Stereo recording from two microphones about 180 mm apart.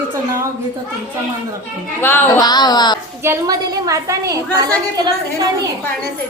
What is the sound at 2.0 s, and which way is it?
A woman's voice, 15° left (ahead or behind).